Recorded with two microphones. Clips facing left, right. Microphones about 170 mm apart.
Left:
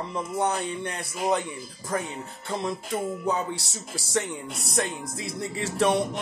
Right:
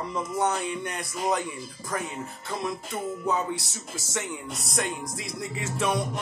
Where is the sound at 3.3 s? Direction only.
30° left (ahead or behind).